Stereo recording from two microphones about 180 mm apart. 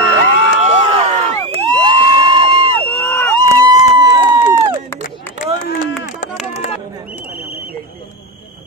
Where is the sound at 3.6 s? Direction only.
20° right (ahead or behind).